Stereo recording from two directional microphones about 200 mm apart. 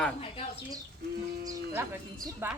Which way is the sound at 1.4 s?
15° right (ahead or behind).